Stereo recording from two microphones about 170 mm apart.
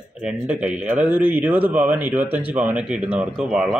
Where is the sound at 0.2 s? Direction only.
5° right (ahead or behind).